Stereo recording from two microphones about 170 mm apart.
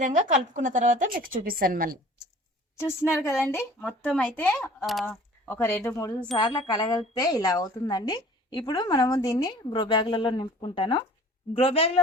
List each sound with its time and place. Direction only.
0.0 s speech: 45° right (ahead or behind)
2.7 s speech: 15° left (ahead or behind)
6.3 s a woman's voice: 25° left (ahead or behind)